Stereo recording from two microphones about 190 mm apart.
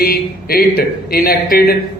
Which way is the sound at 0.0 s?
50° left (ahead or behind).